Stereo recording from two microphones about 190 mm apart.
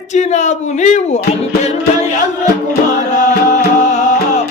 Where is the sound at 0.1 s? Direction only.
40° left (ahead or behind).